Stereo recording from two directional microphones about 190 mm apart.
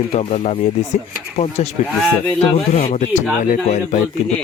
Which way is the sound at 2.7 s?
45° left (ahead or behind).